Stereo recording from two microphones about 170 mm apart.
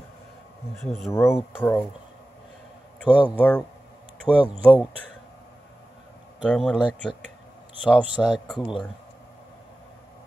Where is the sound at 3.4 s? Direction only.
10° left (ahead or behind).